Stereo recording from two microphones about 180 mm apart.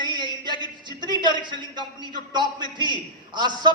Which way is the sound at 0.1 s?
25° right (ahead or behind).